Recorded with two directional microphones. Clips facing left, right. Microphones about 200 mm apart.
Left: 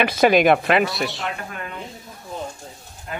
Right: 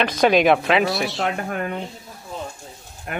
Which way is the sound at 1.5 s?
50° right (ahead or behind).